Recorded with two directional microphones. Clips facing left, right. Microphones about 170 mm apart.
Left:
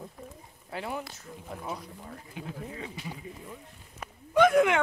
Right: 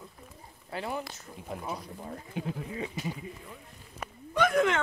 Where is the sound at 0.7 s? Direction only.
10° left (ahead or behind).